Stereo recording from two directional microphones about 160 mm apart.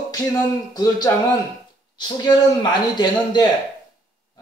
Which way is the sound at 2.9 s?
25° left (ahead or behind).